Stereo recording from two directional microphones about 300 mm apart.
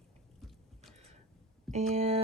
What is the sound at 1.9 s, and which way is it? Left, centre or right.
Speech, right.